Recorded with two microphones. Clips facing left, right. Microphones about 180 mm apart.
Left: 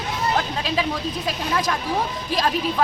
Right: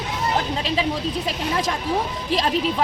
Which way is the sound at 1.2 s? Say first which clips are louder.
Even; 25° right (ahead or behind).